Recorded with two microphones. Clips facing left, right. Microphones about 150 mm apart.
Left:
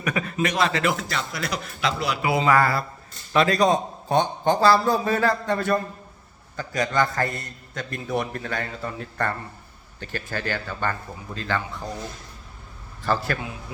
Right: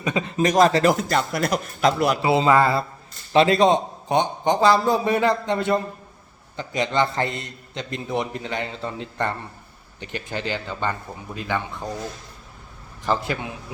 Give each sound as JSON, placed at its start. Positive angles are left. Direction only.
{"t": 0.0, "sound": "a man's voice", "side_deg": -25}
{"t": 0.3, "sound": "a man's voice", "side_deg": -40}
{"t": 2.2, "sound": "a man's voice", "side_deg": -25}
{"t": 13.0, "sound": "a man's voice", "side_deg": -20}